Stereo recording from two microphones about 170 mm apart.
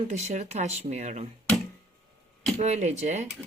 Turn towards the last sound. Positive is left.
turn(degrees=-40)  # may be behind; listen again after turning